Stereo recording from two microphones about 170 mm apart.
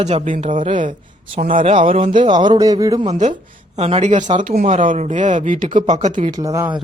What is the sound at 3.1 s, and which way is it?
Speech, 45° right (ahead or behind).